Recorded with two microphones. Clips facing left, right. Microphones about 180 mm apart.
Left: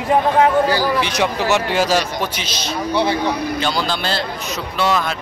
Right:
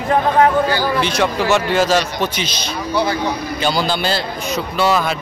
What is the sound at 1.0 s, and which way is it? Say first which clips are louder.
A man's voice: right 2 dB; 15° left (ahead or behind).